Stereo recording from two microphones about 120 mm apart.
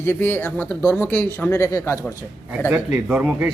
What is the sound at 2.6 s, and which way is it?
Speech, 15° right (ahead or behind).